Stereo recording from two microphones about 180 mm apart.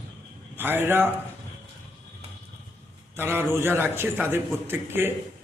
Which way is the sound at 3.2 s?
10° right (ahead or behind).